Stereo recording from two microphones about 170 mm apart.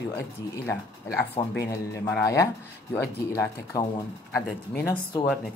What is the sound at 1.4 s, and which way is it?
Speech, 20° left (ahead or behind).